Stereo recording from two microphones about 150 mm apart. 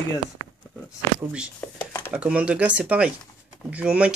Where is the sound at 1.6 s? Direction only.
10° left (ahead or behind).